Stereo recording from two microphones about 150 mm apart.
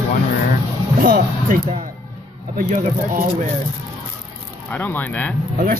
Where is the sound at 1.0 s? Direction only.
65° right (ahead or behind).